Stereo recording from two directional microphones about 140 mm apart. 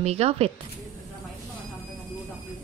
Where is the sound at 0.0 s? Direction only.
50° right (ahead or behind).